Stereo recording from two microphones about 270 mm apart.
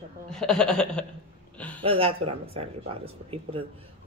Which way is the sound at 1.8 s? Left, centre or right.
Right.